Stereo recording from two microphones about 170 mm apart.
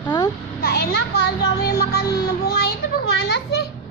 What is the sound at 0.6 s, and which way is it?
Children playing, 65° left (ahead or behind).